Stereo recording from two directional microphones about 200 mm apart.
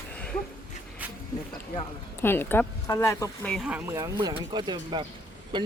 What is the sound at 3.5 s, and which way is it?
Speech, centre (ahead or behind).